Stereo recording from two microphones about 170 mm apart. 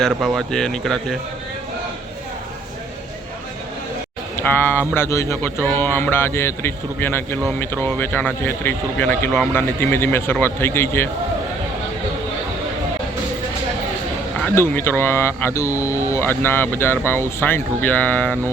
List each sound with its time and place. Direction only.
0.2 s speech: centre (ahead or behind)
4.5 s speech: 10° left (ahead or behind)
14.5 s speech: 15° left (ahead or behind)